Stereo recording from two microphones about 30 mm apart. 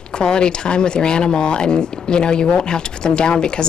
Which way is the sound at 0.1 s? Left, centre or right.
Left.